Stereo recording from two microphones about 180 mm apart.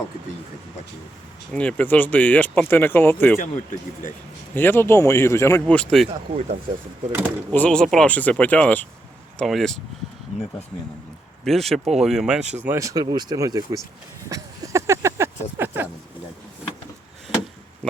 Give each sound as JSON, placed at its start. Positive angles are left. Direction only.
{"t": 1.5, "sound": "speech", "side_deg": 10}
{"t": 3.3, "sound": "speech", "side_deg": 45}
{"t": 4.5, "sound": "speech", "side_deg": 10}
{"t": 6.1, "sound": "speech", "side_deg": -35}
{"t": 7.5, "sound": "speech", "side_deg": 5}
{"t": 10.3, "sound": "speech", "side_deg": 40}
{"t": 11.4, "sound": "speech", "side_deg": 0}
{"t": 14.3, "sound": "a sound", "side_deg": -20}